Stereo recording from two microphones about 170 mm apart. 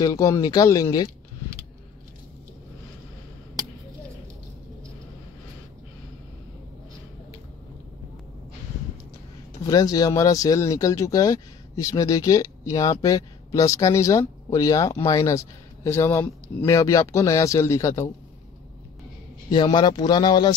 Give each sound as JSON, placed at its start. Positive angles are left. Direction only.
{"t": 0.0, "sound": "speech", "side_deg": 20}
{"t": 9.6, "sound": "speech", "side_deg": 20}
{"t": 19.5, "sound": "speech", "side_deg": 25}